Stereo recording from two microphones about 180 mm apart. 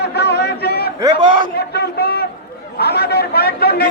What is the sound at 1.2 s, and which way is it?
Speech, 25° right (ahead or behind).